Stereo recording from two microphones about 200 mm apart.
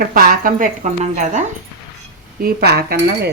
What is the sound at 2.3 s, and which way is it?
Speech, 50° right (ahead or behind).